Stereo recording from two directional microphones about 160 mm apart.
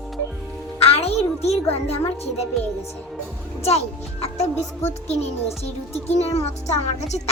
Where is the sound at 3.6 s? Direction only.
40° left (ahead or behind).